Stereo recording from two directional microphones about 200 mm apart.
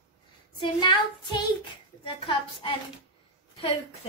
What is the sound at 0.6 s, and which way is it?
Speech, 25° left (ahead or behind).